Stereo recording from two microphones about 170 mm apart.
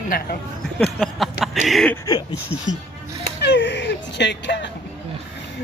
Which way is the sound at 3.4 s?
85° left.